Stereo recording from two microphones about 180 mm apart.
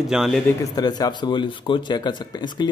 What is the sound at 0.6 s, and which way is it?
Speech, 20° left (ahead or behind).